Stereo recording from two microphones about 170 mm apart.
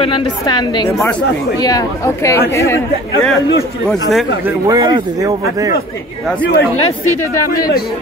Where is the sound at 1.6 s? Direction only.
20° left (ahead or behind).